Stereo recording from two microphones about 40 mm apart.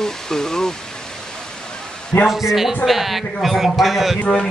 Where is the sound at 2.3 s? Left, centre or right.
Centre.